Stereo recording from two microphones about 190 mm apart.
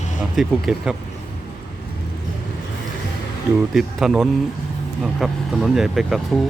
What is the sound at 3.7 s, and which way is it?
Speech, centre (ahead or behind).